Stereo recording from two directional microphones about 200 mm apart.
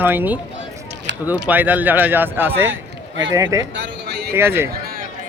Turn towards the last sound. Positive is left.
turn(degrees=-10)  # may be behind; listen again after turning